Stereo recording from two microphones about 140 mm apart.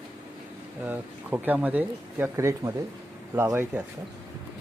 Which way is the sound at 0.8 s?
10° right (ahead or behind).